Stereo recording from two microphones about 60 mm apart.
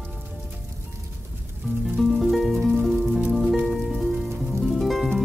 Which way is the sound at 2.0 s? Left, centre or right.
Centre.